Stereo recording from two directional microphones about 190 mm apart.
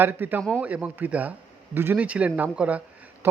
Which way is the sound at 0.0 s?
10° right (ahead or behind).